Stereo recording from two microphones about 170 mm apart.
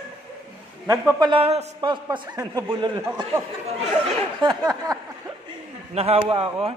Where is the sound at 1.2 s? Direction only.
35° right (ahead or behind).